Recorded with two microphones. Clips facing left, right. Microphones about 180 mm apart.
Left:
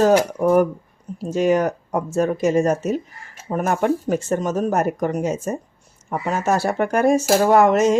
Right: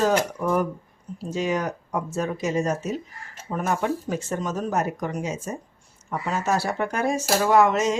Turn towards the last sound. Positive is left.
turn(degrees=55)  # may be behind; listen again after turning